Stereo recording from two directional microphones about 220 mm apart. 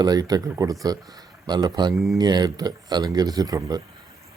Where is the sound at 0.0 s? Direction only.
15° right (ahead or behind).